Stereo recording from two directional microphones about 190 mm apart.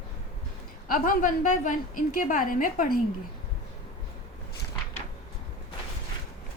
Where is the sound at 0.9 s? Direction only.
45° left (ahead or behind).